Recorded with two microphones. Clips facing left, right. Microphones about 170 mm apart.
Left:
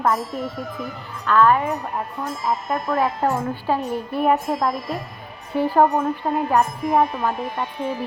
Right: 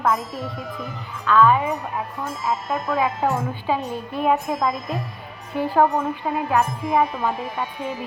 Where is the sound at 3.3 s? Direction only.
10° left (ahead or behind).